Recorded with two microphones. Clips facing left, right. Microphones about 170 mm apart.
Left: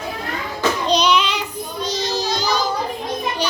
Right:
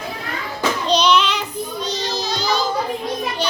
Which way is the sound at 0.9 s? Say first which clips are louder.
Right 2 dB; 10° left (ahead or behind).